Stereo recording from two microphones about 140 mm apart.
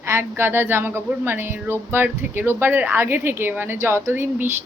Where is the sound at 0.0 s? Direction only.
15° right (ahead or behind).